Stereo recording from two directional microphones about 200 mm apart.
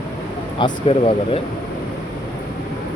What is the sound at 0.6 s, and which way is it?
Speech, 30° left (ahead or behind).